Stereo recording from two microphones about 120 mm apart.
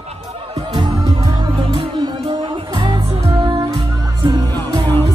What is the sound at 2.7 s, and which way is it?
Music, 40° right (ahead or behind).